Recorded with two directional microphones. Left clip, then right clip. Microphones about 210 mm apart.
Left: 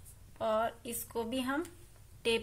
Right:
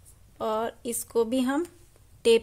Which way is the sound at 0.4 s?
55° right (ahead or behind).